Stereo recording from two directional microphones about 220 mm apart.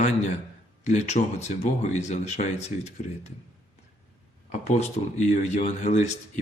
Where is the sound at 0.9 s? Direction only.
30° left (ahead or behind).